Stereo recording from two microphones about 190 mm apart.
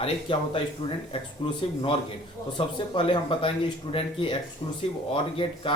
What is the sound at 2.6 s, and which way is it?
Speech, 25° left (ahead or behind).